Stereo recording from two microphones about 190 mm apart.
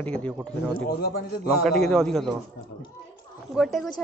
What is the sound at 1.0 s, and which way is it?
Speech, 55° left (ahead or behind).